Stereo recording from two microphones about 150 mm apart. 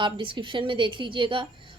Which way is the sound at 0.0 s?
35° right (ahead or behind).